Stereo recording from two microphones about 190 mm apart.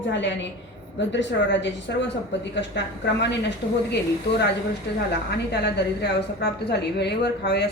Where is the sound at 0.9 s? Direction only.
70° left (ahead or behind).